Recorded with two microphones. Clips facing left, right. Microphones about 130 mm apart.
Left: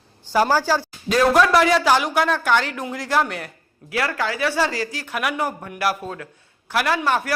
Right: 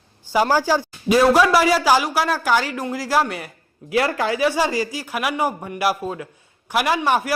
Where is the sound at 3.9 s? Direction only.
25° right (ahead or behind).